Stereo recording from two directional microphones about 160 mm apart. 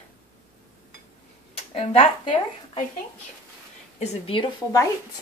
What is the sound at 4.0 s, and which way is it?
Speech, 35° left (ahead or behind).